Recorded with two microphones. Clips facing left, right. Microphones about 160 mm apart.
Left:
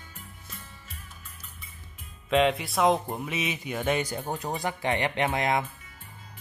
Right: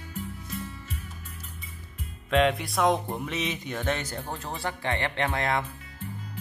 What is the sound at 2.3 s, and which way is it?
Speech, centre (ahead or behind).